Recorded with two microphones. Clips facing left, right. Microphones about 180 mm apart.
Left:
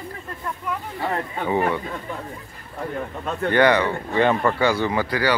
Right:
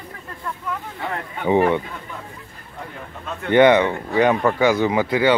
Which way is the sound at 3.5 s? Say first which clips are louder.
Right 5 dB; 20° right (ahead or behind).